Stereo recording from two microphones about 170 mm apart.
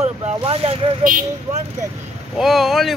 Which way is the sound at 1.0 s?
50° right (ahead or behind).